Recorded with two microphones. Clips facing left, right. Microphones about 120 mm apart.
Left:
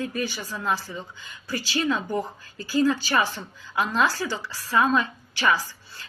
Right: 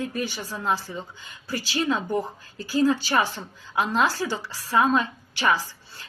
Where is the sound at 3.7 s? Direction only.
20° right (ahead or behind).